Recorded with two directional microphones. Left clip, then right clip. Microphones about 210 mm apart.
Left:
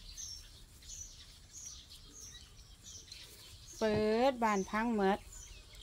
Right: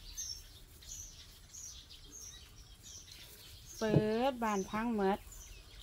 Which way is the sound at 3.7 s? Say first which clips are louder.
Left 1 dB; 25° left (ahead or behind).